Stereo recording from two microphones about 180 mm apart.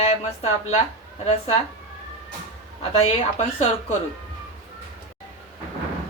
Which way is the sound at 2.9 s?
35° left (ahead or behind).